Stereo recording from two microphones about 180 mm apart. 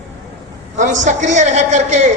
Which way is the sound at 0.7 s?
45° right (ahead or behind).